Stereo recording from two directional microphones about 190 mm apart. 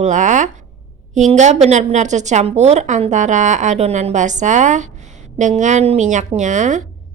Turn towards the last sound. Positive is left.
turn(degrees=-40)  # may be behind; listen again after turning